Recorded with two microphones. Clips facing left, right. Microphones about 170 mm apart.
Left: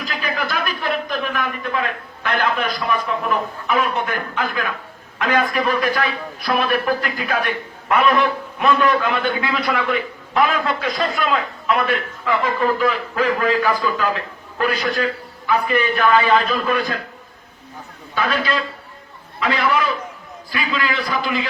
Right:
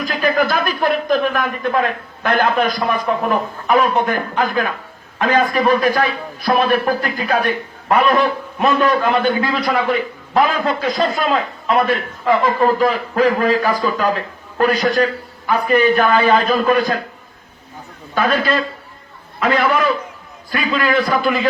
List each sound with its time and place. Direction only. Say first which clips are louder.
0.0 s a man's voice: right 8 dB; 50° right (ahead or behind)
18.1 s a man's voice: right 4 dB; 45° right (ahead or behind)